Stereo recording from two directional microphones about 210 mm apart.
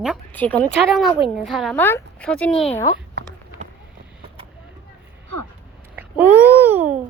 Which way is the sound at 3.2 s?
50° right (ahead or behind).